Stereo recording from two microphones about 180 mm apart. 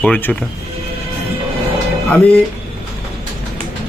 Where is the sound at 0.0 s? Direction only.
10° left (ahead or behind).